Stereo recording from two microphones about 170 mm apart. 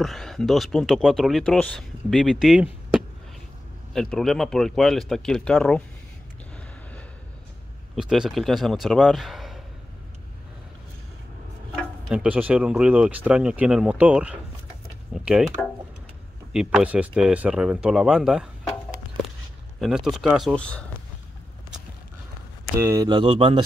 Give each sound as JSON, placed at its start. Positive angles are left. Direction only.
{"t": 0.0, "sound": "speech", "side_deg": 0}
{"t": 7.9, "sound": "speech", "side_deg": 0}
{"t": 12.1, "sound": "speech", "side_deg": -5}
{"t": 16.5, "sound": "speech", "side_deg": -5}
{"t": 19.8, "sound": "speech", "side_deg": -5}
{"t": 22.8, "sound": "speech", "side_deg": -20}